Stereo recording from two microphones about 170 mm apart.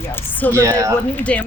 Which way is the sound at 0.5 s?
20° right (ahead or behind).